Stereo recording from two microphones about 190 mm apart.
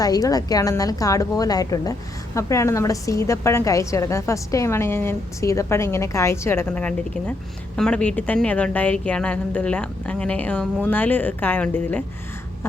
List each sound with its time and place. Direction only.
0.0 s a woman's voice: 20° left (ahead or behind)